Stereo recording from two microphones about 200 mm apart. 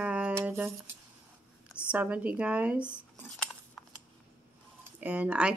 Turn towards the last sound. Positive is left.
turn(degrees=-5)  # may be behind; listen again after turning